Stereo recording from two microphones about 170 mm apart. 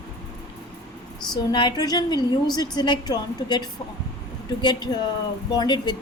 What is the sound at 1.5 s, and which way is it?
A woman's voice, 25° left (ahead or behind).